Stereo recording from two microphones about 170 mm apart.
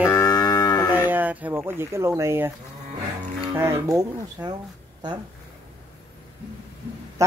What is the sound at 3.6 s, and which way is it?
Speech, 15° right (ahead or behind).